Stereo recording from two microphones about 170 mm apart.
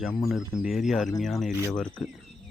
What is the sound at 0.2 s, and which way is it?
Speech, centre (ahead or behind).